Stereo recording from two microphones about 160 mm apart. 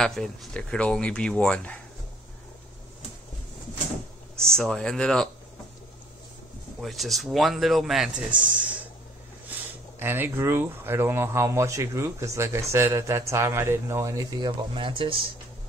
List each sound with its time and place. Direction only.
0.0 s speech: 5° left (ahead or behind)
4.4 s speech: 5° left (ahead or behind)
6.8 s speech: centre (ahead or behind)
9.9 s speech: 15° right (ahead or behind); by 15.2 s 35° right (ahead or behind)